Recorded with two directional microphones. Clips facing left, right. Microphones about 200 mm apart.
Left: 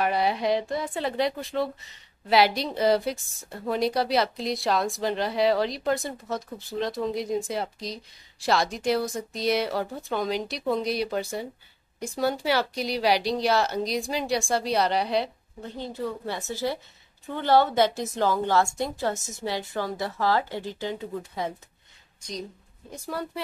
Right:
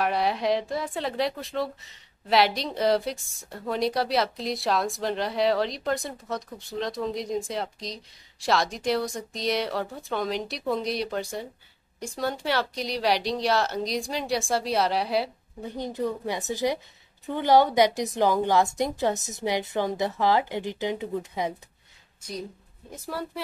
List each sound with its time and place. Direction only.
0.0 s a woman's voice: centre (ahead or behind); by 21.5 s 15° right (ahead or behind)
22.8 s a woman's voice: centre (ahead or behind)